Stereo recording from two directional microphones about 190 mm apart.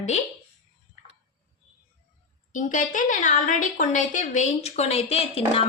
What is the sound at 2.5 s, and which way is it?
A woman's voice, 40° left (ahead or behind).